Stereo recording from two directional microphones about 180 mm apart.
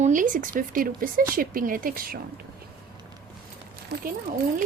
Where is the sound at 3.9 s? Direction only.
65° right (ahead or behind).